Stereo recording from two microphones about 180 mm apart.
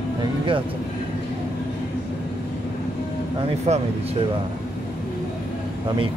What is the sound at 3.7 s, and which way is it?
Speech, 35° right (ahead or behind).